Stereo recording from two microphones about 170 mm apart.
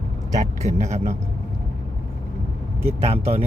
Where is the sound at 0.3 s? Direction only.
45° right (ahead or behind).